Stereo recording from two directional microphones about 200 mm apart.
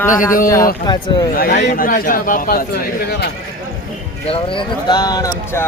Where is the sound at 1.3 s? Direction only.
40° left (ahead or behind).